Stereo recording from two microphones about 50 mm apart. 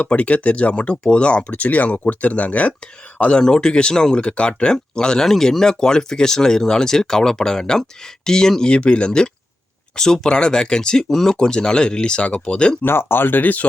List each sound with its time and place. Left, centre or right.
0.0 s speech: left
8.7 s speech: left
12.8 s speech: left